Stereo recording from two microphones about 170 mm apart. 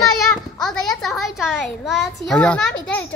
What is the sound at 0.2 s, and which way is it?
Children playing, 5° left (ahead or behind).